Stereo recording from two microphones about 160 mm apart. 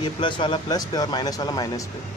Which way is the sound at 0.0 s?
30° left (ahead or behind).